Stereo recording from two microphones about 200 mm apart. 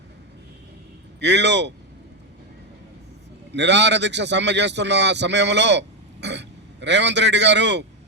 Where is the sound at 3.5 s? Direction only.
60° right (ahead or behind).